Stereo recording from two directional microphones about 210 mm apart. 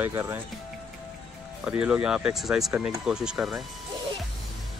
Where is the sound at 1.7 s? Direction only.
5° right (ahead or behind).